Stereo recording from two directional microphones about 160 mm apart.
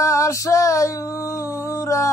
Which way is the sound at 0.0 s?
20° left (ahead or behind).